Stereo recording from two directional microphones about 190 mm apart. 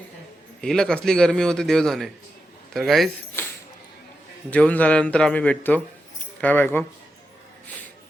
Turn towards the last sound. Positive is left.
turn(degrees=10)  # may be behind; listen again after turning